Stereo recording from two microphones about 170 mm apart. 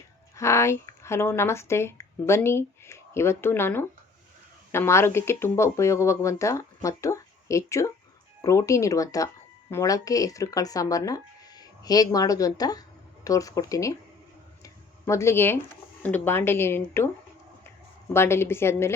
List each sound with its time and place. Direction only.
0.3 s speech: 15° left (ahead or behind)
14.6 s a sound: 15° left (ahead or behind)
16.0 s speech: 10° left (ahead or behind)
18.1 s speech: 15° left (ahead or behind)